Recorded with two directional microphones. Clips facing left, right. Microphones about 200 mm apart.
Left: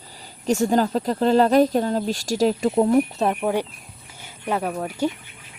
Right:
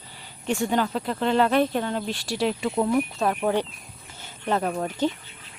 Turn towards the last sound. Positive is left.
turn(degrees=10)  # may be behind; listen again after turning